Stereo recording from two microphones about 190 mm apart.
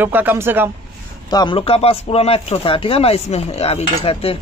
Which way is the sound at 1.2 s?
25° left (ahead or behind).